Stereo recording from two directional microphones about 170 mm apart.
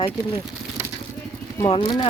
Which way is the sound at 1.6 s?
30° left (ahead or behind).